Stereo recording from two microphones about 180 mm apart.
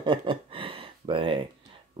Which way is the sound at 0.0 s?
25° right (ahead or behind).